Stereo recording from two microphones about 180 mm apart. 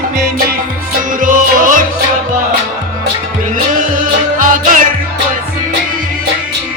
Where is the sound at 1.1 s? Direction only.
50° right (ahead or behind).